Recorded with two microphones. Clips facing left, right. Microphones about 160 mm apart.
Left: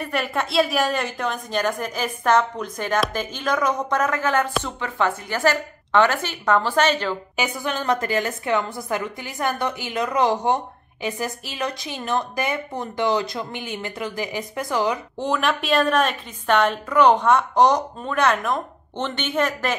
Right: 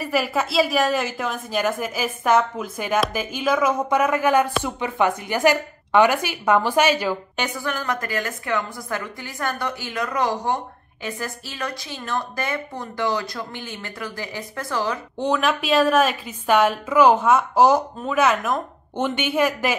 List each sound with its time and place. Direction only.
0.0 s a woman's voice: 5° right (ahead or behind)
7.3 s a woman's voice: 5° left (ahead or behind)
7.6 s a woman's voice: 25° left (ahead or behind)
15.1 s a woman's voice: centre (ahead or behind)